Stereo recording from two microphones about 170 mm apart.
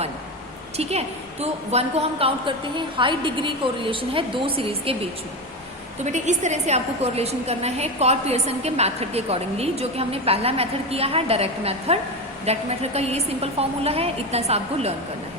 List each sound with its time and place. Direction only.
0.8 s a woman's voice: 40° right (ahead or behind)
6.1 s a woman's voice: 45° right (ahead or behind)